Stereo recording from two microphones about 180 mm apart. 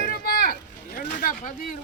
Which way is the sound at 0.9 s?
50° left (ahead or behind).